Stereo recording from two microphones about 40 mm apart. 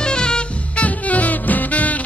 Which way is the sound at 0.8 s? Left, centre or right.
Left.